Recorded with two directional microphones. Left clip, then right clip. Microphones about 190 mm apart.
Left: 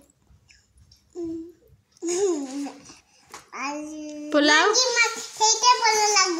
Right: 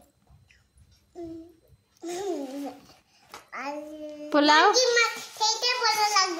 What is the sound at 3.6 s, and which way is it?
Child singing, 15° right (ahead or behind).